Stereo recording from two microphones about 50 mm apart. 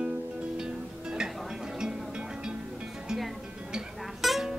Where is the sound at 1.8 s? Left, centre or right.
Centre.